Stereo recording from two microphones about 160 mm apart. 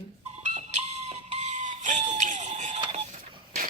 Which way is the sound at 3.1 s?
60° right (ahead or behind).